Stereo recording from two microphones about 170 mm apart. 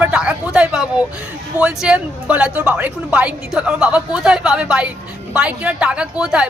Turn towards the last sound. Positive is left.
turn(degrees=-5)  # may be behind; listen again after turning